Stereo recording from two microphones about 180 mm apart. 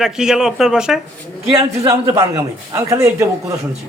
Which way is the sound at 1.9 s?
20° right (ahead or behind).